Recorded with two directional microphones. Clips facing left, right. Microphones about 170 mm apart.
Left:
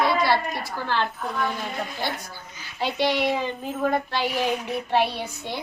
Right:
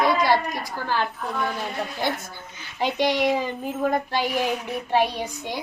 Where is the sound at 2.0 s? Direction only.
25° right (ahead or behind).